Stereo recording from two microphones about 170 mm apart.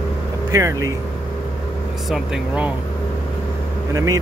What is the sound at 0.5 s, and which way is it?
Speech, 20° right (ahead or behind).